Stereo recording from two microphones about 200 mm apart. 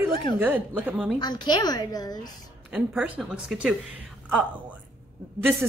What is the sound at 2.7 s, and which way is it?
Speech, 5° right (ahead or behind).